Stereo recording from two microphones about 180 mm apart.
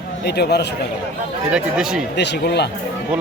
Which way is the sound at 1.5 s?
5° right (ahead or behind).